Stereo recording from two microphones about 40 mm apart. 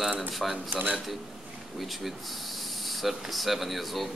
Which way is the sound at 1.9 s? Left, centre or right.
Centre.